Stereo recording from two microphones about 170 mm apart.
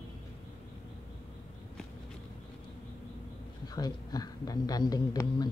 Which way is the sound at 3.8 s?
25° left (ahead or behind).